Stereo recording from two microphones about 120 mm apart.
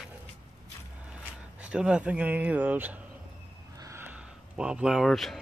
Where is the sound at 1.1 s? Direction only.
10° right (ahead or behind).